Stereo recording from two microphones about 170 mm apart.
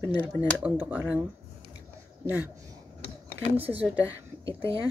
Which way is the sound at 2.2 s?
10° right (ahead or behind).